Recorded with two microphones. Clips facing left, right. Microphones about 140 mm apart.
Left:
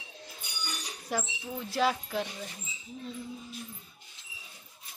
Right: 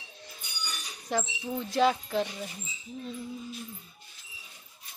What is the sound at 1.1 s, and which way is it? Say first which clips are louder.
Speech: right 4 dB; 10° left (ahead or behind).